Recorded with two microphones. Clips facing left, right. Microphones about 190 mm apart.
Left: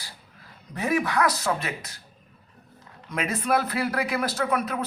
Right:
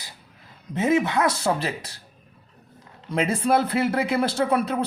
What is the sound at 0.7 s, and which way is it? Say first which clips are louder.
Speech: right 4 dB; 25° right (ahead or behind).